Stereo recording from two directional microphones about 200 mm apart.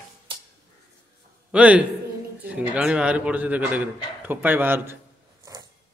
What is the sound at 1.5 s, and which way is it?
A man's voice, 5° right (ahead or behind).